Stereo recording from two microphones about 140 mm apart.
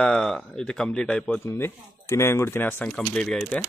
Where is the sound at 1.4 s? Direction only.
20° left (ahead or behind).